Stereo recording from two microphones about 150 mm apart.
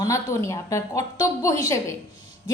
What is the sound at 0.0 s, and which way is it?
A woman's voice, 20° left (ahead or behind).